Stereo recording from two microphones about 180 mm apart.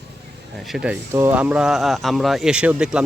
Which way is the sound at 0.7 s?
5° right (ahead or behind).